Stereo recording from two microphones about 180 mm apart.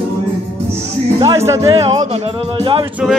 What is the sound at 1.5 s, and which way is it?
Speech, 35° right (ahead or behind).